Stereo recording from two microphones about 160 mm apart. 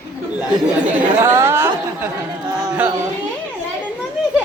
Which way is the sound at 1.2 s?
15° right (ahead or behind).